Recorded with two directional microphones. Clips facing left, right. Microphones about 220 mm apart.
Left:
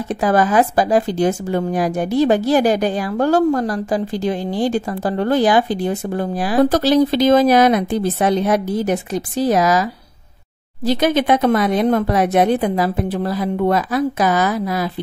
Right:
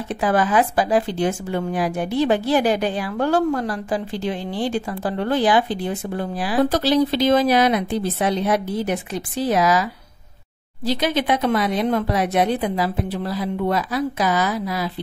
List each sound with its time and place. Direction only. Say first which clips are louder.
0.1 s speech: left 3 dB; 40° left (ahead or behind)
10.9 s speech: left 5 dB; 50° left (ahead or behind)